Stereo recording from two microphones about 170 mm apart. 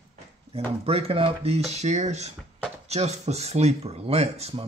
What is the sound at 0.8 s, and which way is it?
Speech, 35° right (ahead or behind).